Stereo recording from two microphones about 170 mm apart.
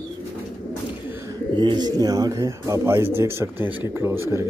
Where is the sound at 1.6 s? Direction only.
25° right (ahead or behind).